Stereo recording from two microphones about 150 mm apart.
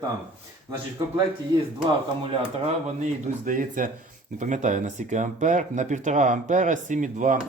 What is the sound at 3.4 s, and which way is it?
Speech, 65° right (ahead or behind).